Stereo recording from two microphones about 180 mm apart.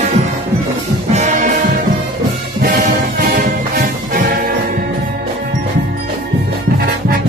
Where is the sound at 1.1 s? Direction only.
45° right (ahead or behind).